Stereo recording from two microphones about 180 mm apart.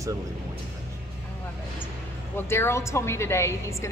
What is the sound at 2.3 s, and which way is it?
A woman's voice, 15° left (ahead or behind).